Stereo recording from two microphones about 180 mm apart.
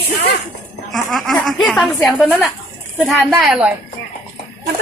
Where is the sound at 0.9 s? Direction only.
Centre (ahead or behind).